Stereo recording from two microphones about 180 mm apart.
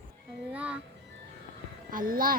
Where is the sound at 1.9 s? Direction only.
50° right (ahead or behind).